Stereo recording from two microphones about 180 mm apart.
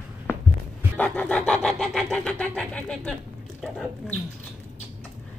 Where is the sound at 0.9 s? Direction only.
5° left (ahead or behind).